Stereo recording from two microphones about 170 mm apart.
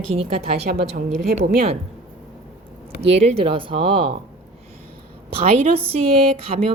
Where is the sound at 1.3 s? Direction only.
60° right (ahead or behind).